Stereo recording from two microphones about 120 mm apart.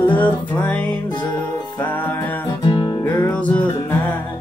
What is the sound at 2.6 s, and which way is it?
Music, 45° left (ahead or behind).